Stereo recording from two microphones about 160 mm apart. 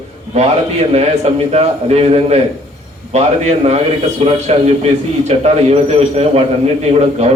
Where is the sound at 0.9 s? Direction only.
40° right (ahead or behind).